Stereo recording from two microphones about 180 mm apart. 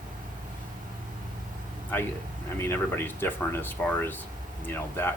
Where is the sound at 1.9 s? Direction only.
10° left (ahead or behind).